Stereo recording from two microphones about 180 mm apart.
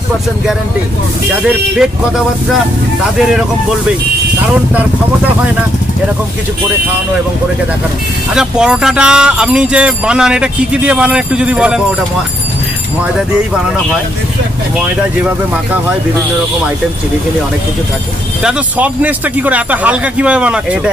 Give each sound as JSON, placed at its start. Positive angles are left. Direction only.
{"t": 1.8, "sound": "speech", "side_deg": -5}
{"t": 8.4, "sound": "speech", "side_deg": -5}
{"t": 18.4, "sound": "speech", "side_deg": -5}